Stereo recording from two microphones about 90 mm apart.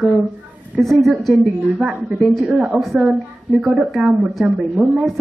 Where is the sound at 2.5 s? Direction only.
15° right (ahead or behind).